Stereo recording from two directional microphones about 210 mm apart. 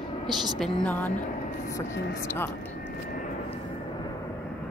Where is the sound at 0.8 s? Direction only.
10° left (ahead or behind).